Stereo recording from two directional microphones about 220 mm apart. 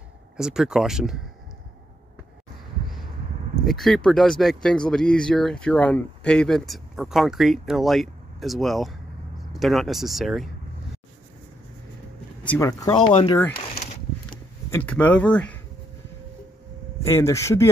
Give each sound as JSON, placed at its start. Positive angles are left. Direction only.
{"t": 0.4, "sound": "speech", "side_deg": -5}
{"t": 3.6, "sound": "speech", "side_deg": 0}
{"t": 12.4, "sound": "speech", "side_deg": 15}
{"t": 14.7, "sound": "speech", "side_deg": 5}
{"t": 17.1, "sound": "speech", "side_deg": 15}